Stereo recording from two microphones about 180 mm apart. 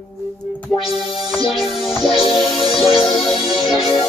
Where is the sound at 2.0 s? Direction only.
30° left (ahead or behind).